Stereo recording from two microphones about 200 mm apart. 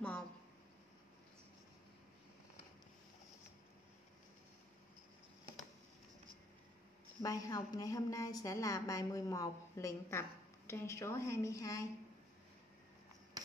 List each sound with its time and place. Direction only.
7.2 s a woman's voice: 20° left (ahead or behind)